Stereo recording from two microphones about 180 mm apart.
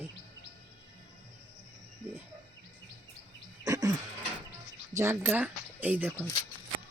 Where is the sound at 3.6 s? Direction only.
20° right (ahead or behind).